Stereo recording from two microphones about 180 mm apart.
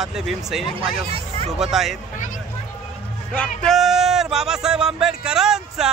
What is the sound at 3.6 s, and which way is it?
Music, centre (ahead or behind).